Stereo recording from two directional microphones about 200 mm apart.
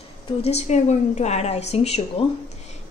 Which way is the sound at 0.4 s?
35° left (ahead or behind).